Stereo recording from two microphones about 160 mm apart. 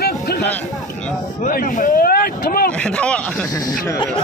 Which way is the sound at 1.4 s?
60° left (ahead or behind).